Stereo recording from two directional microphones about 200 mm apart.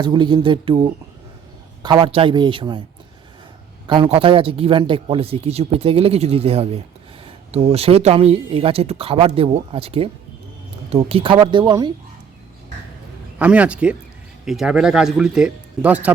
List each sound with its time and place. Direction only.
0.0 s a man's voice: 20° right (ahead or behind)
3.8 s a man's voice: 25° right (ahead or behind)
13.4 s speech: 5° right (ahead or behind)